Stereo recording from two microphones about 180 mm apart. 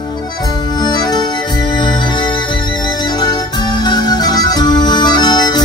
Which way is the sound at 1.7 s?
25° left (ahead or behind).